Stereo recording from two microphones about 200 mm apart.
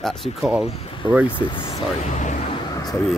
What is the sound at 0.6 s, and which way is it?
Speech, 30° left (ahead or behind).